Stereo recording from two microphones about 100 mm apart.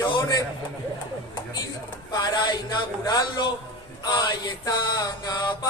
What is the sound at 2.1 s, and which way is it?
A man's voice, 45° left (ahead or behind).